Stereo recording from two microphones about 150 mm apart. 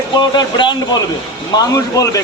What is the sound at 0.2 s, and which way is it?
A man's voice, 30° left (ahead or behind).